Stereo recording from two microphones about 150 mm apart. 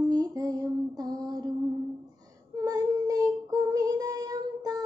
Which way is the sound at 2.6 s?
25° right (ahead or behind).